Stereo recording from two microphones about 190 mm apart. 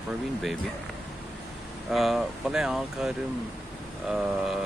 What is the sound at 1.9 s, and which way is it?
Speech, centre (ahead or behind).